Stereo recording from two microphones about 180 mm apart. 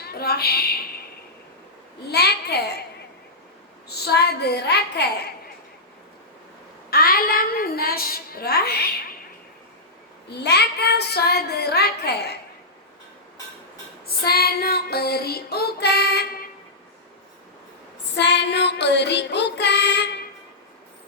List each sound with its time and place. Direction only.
0.0 s a woman's voice: 60° left (ahead or behind)
2.0 s a child's voice: 65° left (ahead or behind)
3.8 s child singing: 65° left (ahead or behind)
6.9 s child singing: 55° left (ahead or behind)
10.2 s child singing: 65° left (ahead or behind)
14.3 s child singing: 60° left (ahead or behind)
18.1 s child singing: 70° left (ahead or behind)